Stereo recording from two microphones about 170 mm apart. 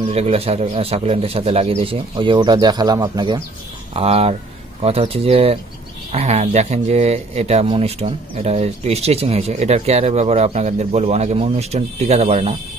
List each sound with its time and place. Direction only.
0.1 s speech: 35° right (ahead or behind)
3.9 s speech: 35° right (ahead or behind)